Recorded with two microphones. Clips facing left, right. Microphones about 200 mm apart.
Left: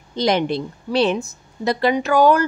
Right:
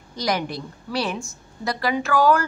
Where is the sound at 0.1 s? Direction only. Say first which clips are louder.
Left 6 dB; 25° left (ahead or behind).